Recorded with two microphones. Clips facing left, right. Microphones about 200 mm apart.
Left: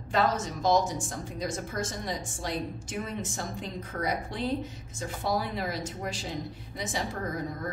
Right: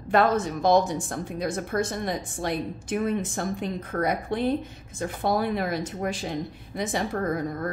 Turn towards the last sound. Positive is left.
turn(degrees=-60)  # may be behind; listen again after turning